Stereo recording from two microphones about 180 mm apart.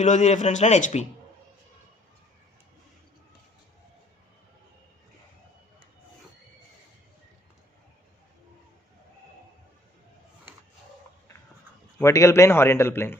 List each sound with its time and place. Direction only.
0.0 s speech: 40° left (ahead or behind)
11.9 s a man's voice: 15° left (ahead or behind)